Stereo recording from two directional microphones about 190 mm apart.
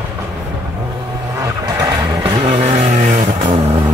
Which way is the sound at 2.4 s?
40° right (ahead or behind).